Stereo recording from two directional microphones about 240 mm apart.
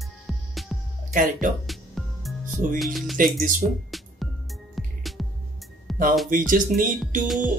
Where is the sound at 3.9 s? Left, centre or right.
Centre.